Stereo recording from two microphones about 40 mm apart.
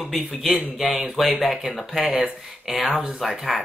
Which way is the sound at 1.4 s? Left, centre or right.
Centre.